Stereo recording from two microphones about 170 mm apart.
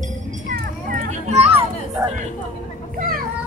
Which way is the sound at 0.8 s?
40° right (ahead or behind).